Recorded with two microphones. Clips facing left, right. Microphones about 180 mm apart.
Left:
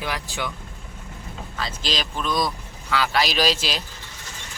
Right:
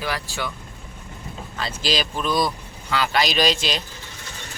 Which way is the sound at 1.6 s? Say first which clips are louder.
Right 4 dB; 5° right (ahead or behind).